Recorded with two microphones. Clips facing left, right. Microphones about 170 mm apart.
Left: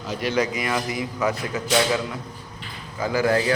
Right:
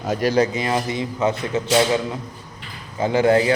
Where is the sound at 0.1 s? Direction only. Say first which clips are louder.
Right 5 dB; 40° right (ahead or behind); by 2.0 s 25° right (ahead or behind).